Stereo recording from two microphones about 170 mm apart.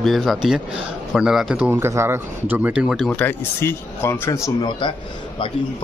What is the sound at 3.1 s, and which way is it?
Speech, 10° left (ahead or behind).